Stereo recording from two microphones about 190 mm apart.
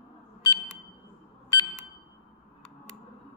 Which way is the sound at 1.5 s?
20° left (ahead or behind).